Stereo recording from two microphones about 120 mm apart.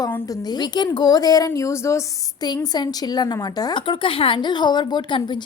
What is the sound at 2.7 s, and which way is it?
Speech, 35° left (ahead or behind).